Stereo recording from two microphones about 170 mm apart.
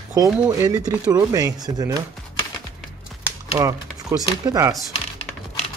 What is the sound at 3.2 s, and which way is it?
Typewriter, 20° right (ahead or behind).